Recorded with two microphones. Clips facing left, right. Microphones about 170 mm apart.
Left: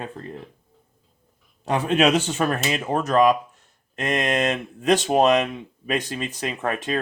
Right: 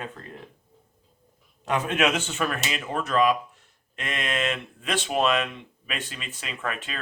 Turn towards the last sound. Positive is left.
turn(degrees=40)  # may be behind; listen again after turning